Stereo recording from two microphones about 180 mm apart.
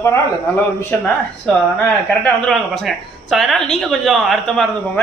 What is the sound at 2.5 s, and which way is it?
Speech, centre (ahead or behind).